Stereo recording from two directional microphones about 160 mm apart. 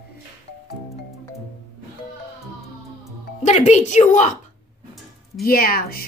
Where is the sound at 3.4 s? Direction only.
45° left (ahead or behind).